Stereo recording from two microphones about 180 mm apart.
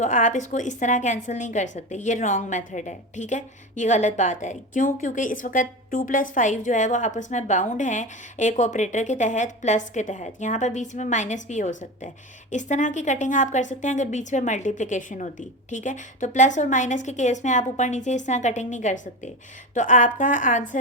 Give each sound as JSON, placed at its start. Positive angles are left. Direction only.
{"t": 0.0, "sound": "a woman's voice", "side_deg": 45}